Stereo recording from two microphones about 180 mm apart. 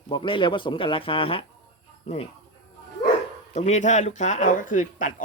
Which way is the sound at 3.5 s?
40° left (ahead or behind).